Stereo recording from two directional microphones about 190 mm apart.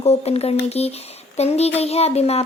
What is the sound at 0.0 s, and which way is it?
Speech, 30° left (ahead or behind).